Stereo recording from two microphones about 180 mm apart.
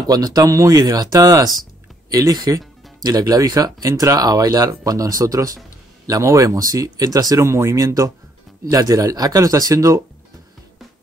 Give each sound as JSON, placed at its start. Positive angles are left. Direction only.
{"t": 0.0, "sound": "a man's voice", "side_deg": -20}